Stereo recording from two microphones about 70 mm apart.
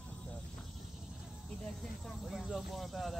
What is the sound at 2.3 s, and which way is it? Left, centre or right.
Speech, centre.